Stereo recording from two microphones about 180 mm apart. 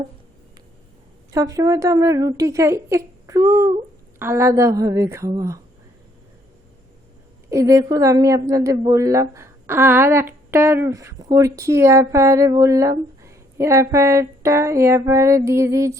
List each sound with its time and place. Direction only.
1.3 s a woman's voice: 20° right (ahead or behind)
7.5 s a woman's voice: 15° right (ahead or behind)